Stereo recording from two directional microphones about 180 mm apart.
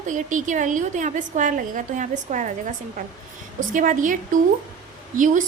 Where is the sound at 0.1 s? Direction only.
45° right (ahead or behind).